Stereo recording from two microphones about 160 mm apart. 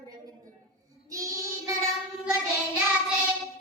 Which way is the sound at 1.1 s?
20° right (ahead or behind).